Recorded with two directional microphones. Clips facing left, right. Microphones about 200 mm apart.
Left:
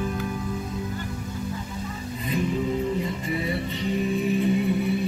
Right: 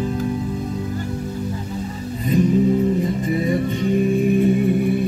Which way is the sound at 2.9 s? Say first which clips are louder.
Right 7 dB; 45° right (ahead or behind).